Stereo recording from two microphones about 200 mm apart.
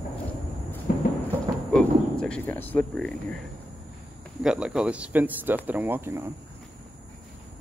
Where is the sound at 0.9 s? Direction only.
45° left (ahead or behind).